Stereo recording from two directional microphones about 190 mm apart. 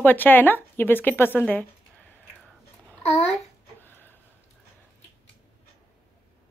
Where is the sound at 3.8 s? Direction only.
10° left (ahead or behind).